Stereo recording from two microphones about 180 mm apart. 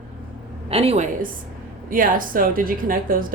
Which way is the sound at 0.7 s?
35° right (ahead or behind).